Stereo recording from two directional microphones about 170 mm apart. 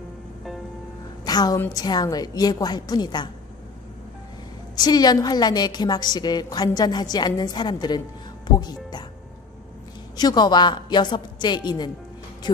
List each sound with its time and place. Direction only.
1.2 s a woman's voice: 25° left (ahead or behind)
4.7 s a woman's voice: 25° left (ahead or behind)
10.1 s a woman's voice: 25° left (ahead or behind)